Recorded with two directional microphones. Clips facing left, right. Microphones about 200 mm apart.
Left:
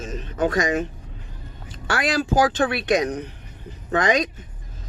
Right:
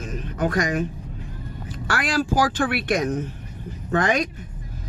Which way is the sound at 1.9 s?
25° left (ahead or behind).